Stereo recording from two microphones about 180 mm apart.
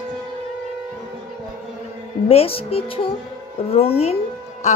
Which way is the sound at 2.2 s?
30° left (ahead or behind).